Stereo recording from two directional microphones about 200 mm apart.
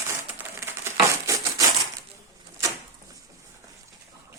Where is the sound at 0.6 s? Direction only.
15° right (ahead or behind).